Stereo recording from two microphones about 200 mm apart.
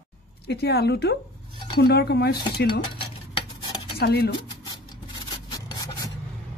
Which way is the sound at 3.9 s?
55° left (ahead or behind).